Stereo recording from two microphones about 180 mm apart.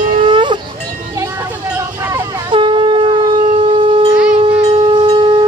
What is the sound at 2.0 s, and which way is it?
Shofar, 15° right (ahead or behind).